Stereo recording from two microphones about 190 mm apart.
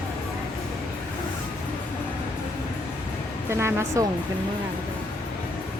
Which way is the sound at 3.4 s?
15° right (ahead or behind).